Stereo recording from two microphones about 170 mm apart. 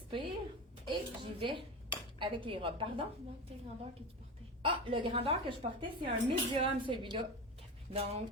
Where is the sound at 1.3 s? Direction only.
30° right (ahead or behind).